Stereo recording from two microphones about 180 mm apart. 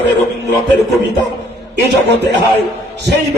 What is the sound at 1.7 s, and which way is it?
Speech, 65° right (ahead or behind).